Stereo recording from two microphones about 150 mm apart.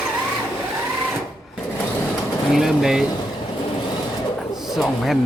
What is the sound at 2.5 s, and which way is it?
Speech, centre (ahead or behind).